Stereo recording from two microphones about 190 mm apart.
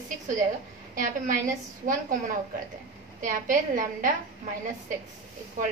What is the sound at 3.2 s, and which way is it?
Speech, 45° right (ahead or behind).